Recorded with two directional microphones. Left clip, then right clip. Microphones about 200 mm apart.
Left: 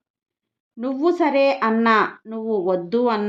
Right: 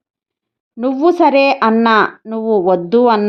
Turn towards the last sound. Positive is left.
turn(degrees=-35)  # may be behind; listen again after turning